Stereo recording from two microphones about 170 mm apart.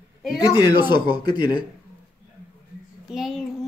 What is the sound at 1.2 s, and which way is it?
Speech, 60° right (ahead or behind).